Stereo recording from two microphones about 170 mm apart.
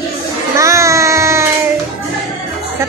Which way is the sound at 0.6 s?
20° right (ahead or behind).